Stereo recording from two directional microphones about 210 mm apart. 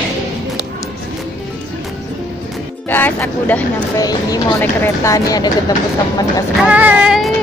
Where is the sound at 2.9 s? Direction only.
10° left (ahead or behind).